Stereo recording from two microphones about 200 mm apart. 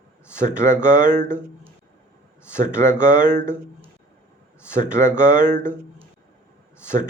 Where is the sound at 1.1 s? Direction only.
10° left (ahead or behind).